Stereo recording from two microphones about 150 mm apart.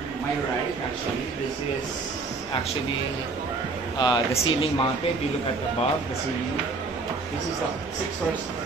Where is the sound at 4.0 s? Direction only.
30° left (ahead or behind).